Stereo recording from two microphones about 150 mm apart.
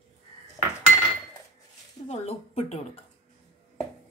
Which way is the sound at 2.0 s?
45° left (ahead or behind).